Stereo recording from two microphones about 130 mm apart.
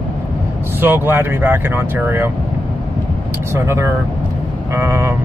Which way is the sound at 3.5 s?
20° right (ahead or behind).